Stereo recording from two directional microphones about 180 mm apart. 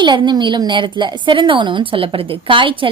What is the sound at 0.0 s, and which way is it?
A woman's voice, 25° right (ahead or behind).